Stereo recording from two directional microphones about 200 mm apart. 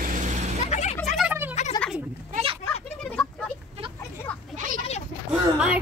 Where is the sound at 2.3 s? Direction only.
30° right (ahead or behind).